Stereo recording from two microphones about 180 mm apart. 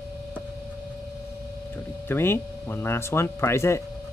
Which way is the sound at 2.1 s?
10° left (ahead or behind).